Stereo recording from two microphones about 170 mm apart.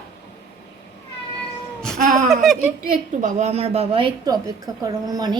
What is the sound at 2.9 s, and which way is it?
A woman's voice, 45° right (ahead or behind).